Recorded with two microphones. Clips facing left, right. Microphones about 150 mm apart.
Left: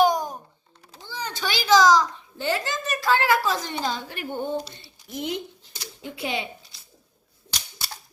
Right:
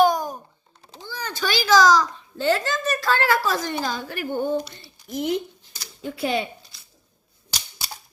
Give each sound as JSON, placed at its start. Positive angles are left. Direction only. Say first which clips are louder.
{"t": 0.0, "sound": "a sound", "louder": "right 2 dB", "side_deg": 20}
{"t": 1.0, "sound": "a child's voice", "louder": "right 2 dB", "side_deg": 20}
{"t": 4.4, "sound": "speech", "louder": "right 4 dB", "side_deg": -10}
{"t": 5.1, "sound": "typewriter", "louder": "right 5 dB", "side_deg": 20}
{"t": 6.0, "sound": "speech", "louder": "right 5 dB", "side_deg": -45}